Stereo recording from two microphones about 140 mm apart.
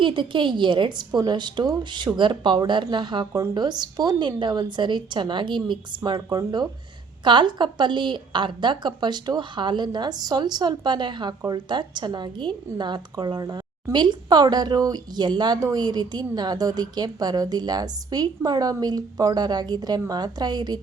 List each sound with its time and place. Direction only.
0.0 s a woman's voice: 35° right (ahead or behind)